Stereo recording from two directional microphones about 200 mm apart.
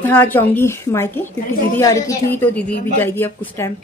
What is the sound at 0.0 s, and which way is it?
Speech, 10° left (ahead or behind).